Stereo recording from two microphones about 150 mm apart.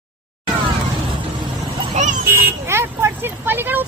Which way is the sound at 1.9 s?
50° right (ahead or behind).